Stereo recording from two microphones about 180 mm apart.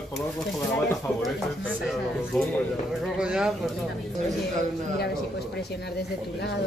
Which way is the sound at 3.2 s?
5° right (ahead or behind).